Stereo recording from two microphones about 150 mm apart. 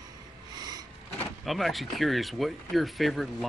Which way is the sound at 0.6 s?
25° right (ahead or behind).